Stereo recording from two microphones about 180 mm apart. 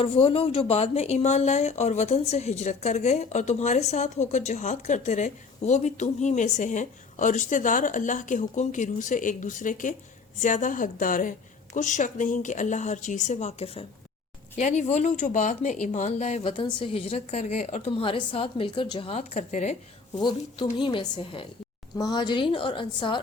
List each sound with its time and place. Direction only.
0.0 s a woman's voice: 30° left (ahead or behind)
20.1 s a woman's voice: 25° left (ahead or behind)